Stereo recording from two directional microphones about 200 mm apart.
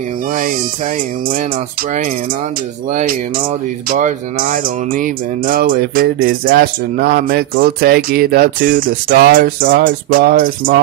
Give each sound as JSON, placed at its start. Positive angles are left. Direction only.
{"t": 2.9, "sound": "speech", "side_deg": -40}